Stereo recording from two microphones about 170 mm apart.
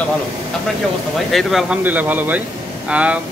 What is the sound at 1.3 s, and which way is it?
Speech, centre (ahead or behind).